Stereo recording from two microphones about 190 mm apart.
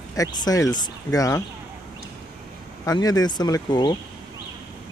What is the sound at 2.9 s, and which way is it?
Speech, 20° left (ahead or behind).